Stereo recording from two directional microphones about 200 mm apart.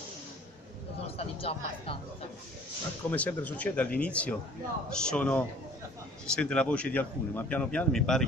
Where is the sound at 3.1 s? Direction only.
5° left (ahead or behind).